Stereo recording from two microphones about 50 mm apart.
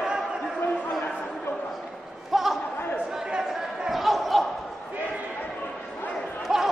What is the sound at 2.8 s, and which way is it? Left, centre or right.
Chatter, left.